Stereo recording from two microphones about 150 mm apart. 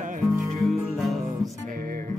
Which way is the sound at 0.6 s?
Centre (ahead or behind).